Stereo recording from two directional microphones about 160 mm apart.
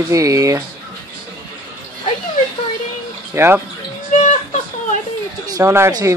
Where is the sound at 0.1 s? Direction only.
20° right (ahead or behind).